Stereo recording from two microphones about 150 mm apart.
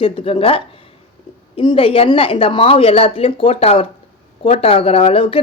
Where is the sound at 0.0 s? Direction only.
40° left (ahead or behind).